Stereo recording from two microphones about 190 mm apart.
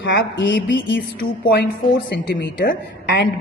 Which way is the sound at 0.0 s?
65° left (ahead or behind).